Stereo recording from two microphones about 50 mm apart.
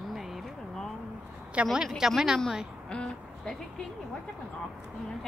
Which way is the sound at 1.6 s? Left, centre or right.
Right.